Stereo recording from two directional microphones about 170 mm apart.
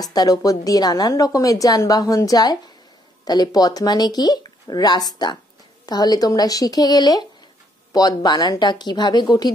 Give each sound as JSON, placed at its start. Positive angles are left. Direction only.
{"t": 0.0, "sound": "a woman's voice", "side_deg": 20}